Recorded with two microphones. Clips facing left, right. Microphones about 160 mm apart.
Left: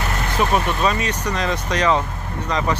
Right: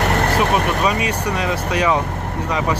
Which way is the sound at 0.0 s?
70° right (ahead or behind).